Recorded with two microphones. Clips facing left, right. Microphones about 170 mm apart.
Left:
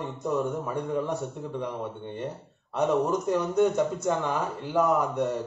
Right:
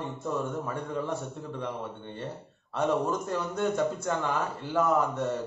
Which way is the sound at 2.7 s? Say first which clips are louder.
Left 3 dB; 15° left (ahead or behind).